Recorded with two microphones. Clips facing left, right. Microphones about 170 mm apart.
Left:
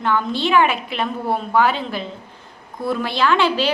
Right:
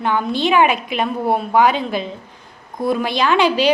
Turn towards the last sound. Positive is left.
turn(degrees=-15)  # may be behind; listen again after turning